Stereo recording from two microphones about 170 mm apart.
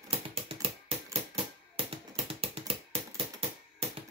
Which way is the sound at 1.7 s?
35° right (ahead or behind).